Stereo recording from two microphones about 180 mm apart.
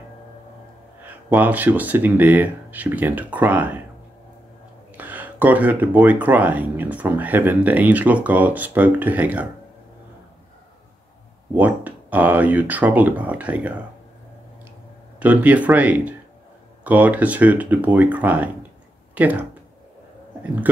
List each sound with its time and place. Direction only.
1.3 s speech: 10° right (ahead or behind)
4.9 s speech: 10° right (ahead or behind)
11.5 s speech: 10° right (ahead or behind)
15.1 s speech: 10° right (ahead or behind)